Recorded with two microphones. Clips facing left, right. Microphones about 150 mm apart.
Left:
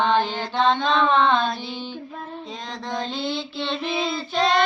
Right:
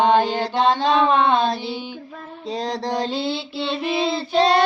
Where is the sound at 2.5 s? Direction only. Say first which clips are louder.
Right 10 dB; 35° right (ahead or behind).